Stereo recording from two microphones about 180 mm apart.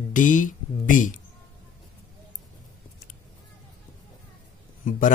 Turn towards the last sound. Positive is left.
turn(degrees=45)  # may be behind; listen again after turning